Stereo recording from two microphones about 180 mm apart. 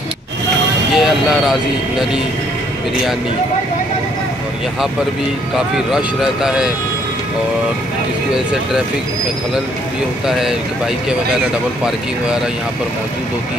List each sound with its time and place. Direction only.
0.9 s speech: centre (ahead or behind)
5.9 s speech: 5° right (ahead or behind)
10.2 s speech: centre (ahead or behind)